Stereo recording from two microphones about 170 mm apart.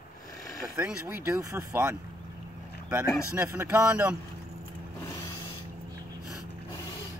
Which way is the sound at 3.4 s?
10° right (ahead or behind).